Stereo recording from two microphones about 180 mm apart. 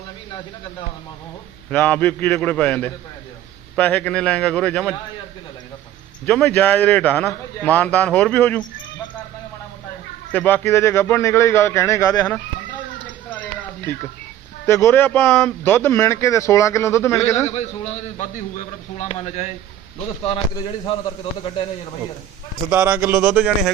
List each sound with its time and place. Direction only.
1.7 s a man's voice: 10° left (ahead or behind)
6.2 s a man's voice: 5° left (ahead or behind)
10.3 s a man's voice: 10° left (ahead or behind)
14.7 s a man's voice: 15° left (ahead or behind)
17.4 s a man's voice: 35° left (ahead or behind)
22.7 s speech: 10° right (ahead or behind)